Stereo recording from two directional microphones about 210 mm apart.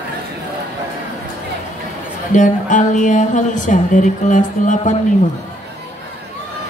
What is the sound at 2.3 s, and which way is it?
Speech, 35° left (ahead or behind).